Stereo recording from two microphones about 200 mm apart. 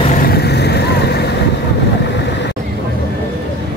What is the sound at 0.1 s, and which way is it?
Vehicle, 50° left (ahead or behind).